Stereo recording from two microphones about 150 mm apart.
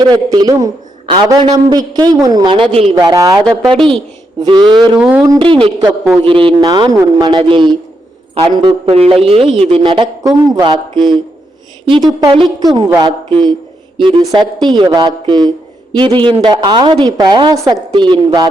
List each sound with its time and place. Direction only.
0.0 s a woman's voice: 30° right (ahead or behind)
2.9 s a woman's voice: 25° right (ahead or behind)
4.8 s speech: 10° right (ahead or behind)
5.4 s a woman's voice: 35° right (ahead or behind)